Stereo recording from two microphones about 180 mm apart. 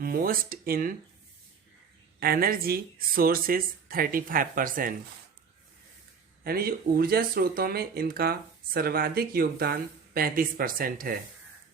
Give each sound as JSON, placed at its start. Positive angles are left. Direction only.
{"t": 0.0, "sound": "speech", "side_deg": -55}
{"t": 2.2, "sound": "speech", "side_deg": -55}
{"t": 6.4, "sound": "speech", "side_deg": -55}